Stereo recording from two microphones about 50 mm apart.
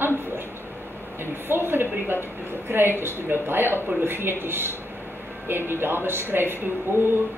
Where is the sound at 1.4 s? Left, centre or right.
Right.